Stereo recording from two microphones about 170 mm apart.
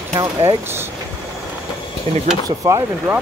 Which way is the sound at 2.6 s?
20° right (ahead or behind).